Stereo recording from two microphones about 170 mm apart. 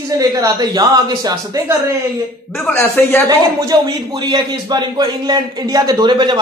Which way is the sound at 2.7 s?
10° left (ahead or behind).